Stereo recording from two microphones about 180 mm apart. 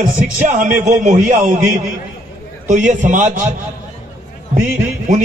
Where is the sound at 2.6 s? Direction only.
45° right (ahead or behind).